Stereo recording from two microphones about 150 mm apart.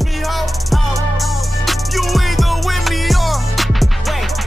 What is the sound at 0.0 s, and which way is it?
Music, centre (ahead or behind).